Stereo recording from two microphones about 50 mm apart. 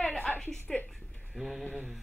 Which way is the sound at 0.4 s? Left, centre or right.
Centre.